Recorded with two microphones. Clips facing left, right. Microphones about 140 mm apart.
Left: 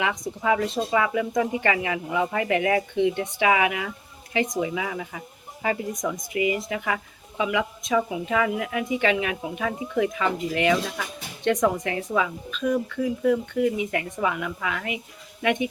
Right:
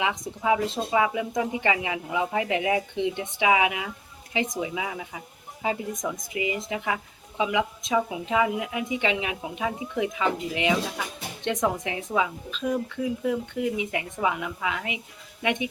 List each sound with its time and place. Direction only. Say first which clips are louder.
0.0 s speech: left 1 dB; 15° right (ahead or behind)
6.3 s a woman's voice: left 5 dB; 20° right (ahead or behind)